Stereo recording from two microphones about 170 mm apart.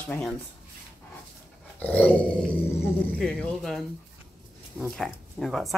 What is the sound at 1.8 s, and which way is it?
Speech, 5° left (ahead or behind).